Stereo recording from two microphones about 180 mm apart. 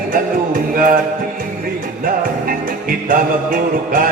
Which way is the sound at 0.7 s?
50° right (ahead or behind).